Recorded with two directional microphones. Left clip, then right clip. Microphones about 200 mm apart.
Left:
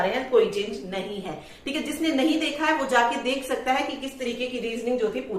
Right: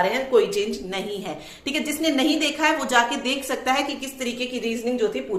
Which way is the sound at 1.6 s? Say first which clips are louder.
Right 3 dB; 50° right (ahead or behind).